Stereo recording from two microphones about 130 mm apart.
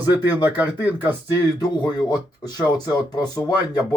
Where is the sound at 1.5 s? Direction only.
30° left (ahead or behind).